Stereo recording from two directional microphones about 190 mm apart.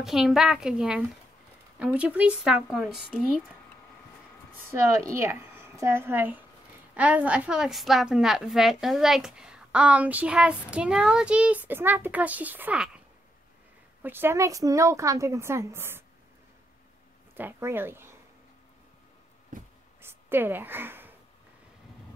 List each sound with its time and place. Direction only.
0.0 s a woman's voice: centre (ahead or behind)
4.6 s a woman's voice: 15° right (ahead or behind)
14.0 s a woman's voice: 10° right (ahead or behind)
17.4 s a woman's voice: 10° right (ahead or behind)
19.5 s a sound: 45° right (ahead or behind)
20.0 s a woman's voice: 10° right (ahead or behind)